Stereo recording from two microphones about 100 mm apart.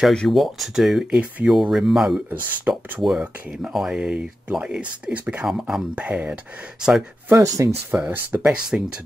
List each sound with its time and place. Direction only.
0.0 s speech: 5° left (ahead or behind)
7.3 s speech: 35° right (ahead or behind)
7.9 s speech: 20° right (ahead or behind)
8.5 s speech: 5° right (ahead or behind)